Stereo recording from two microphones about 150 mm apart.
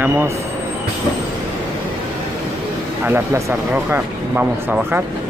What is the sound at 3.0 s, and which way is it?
Speech, 15° right (ahead or behind).